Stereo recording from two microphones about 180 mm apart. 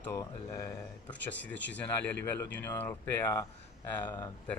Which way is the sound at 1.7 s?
10° left (ahead or behind).